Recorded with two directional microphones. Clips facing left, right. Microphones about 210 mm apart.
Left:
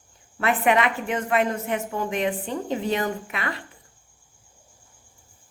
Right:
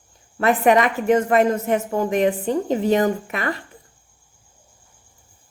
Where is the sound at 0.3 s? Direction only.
40° right (ahead or behind).